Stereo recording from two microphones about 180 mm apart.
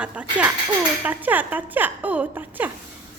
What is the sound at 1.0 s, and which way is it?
Music, 10° right (ahead or behind).